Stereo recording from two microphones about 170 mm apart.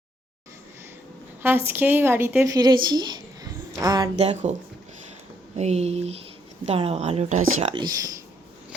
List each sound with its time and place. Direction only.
1.4 s a woman's voice: 10° right (ahead or behind)
4.2 s speech: 40° right (ahead or behind)
5.5 s speech: 40° right (ahead or behind)
7.7 s speech: 25° right (ahead or behind)